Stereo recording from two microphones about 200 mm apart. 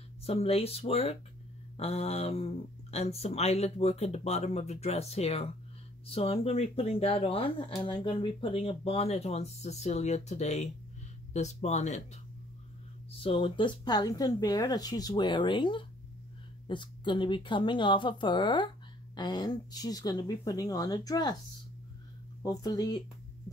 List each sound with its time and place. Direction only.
0.2 s speech: 30° left (ahead or behind)
13.2 s speech: 25° left (ahead or behind)
22.4 s speech: 20° left (ahead or behind)